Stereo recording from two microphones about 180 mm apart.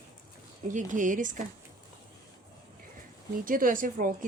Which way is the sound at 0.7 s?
45° right (ahead or behind).